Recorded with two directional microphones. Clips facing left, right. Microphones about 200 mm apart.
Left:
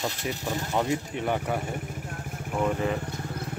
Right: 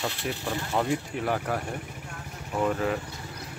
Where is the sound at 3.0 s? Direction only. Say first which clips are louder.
Left 6 dB; 50° left (ahead or behind).